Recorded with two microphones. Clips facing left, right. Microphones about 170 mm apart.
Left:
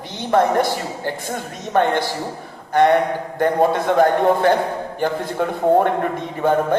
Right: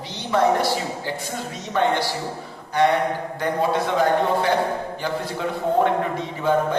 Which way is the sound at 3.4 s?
50° left (ahead or behind).